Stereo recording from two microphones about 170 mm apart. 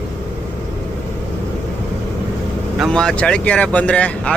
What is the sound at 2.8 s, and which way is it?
Speech, 5° left (ahead or behind).